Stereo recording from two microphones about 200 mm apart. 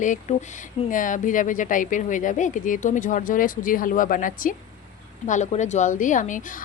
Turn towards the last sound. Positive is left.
turn(degrees=40)  # may be behind; listen again after turning